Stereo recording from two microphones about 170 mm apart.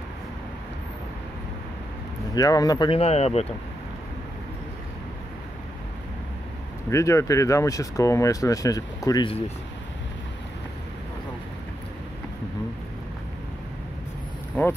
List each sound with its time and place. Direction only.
2.3 s speech: 20° left (ahead or behind)
3.0 s speech: 40° left (ahead or behind)
6.9 s speech: 15° left (ahead or behind)
14.6 s speech: 10° left (ahead or behind)